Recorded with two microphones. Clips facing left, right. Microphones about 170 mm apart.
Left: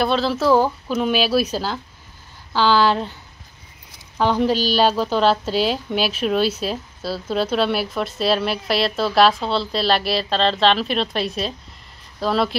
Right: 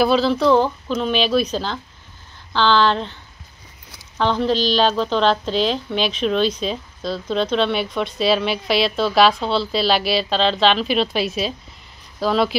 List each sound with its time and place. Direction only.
0.0 s speech: centre (ahead or behind)
4.2 s a woman's voice: 10° left (ahead or behind)